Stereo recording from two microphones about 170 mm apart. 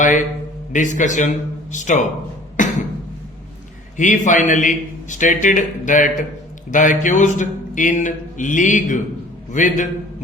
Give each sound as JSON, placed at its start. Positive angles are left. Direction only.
{"t": 0.0, "sound": "a sound", "side_deg": 50}
{"t": 0.7, "sound": "speech", "side_deg": 50}
{"t": 2.6, "sound": "music", "side_deg": 50}
{"t": 3.9, "sound": "speech", "side_deg": 45}